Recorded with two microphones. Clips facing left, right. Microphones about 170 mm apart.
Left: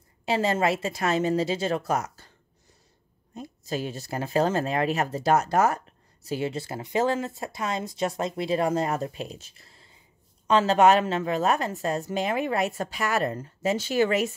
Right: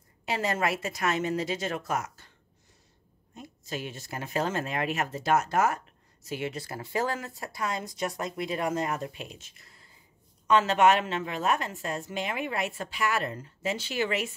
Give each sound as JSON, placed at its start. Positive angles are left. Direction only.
{"t": 0.2, "sound": "speech", "side_deg": 30}
{"t": 3.3, "sound": "speech", "side_deg": 35}